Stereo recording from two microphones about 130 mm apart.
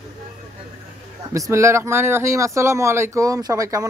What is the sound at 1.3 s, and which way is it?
Speech, 25° right (ahead or behind).